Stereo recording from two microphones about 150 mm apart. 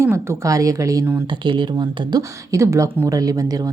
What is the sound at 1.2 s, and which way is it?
Speech, 35° right (ahead or behind).